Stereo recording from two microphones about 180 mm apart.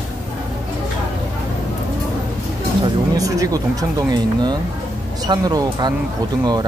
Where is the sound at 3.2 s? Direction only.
20° right (ahead or behind).